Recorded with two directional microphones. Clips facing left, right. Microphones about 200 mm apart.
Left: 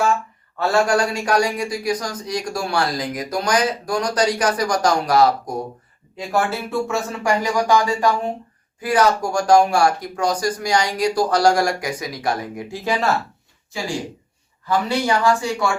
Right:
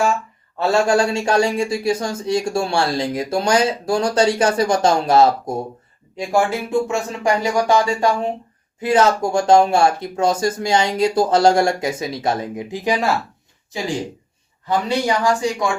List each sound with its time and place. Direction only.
0.6 s speech: 25° right (ahead or behind)
14.7 s speech: 15° right (ahead or behind)